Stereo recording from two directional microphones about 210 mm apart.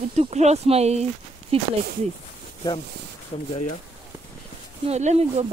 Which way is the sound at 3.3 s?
30° left (ahead or behind).